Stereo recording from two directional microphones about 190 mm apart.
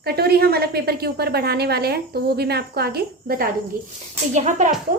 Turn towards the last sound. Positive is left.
turn(degrees=-40)  # may be behind; listen again after turning